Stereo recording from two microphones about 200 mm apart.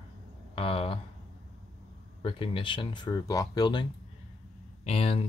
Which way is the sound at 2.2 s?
25° left (ahead or behind).